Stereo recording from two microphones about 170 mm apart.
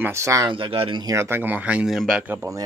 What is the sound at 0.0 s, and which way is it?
Speech, 15° right (ahead or behind).